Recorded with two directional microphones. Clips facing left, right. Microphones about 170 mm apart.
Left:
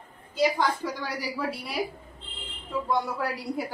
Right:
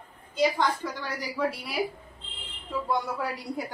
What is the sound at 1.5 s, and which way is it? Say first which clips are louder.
Chuckle: left 3 dB; centre (ahead or behind).